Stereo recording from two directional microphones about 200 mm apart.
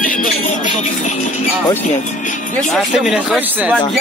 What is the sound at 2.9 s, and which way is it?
Speech, 5° right (ahead or behind).